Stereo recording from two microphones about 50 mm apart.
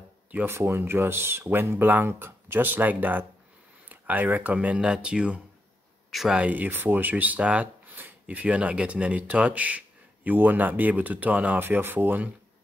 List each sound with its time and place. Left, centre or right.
0.5 s speech: right
6.4 s speech: right
11.6 s speech: right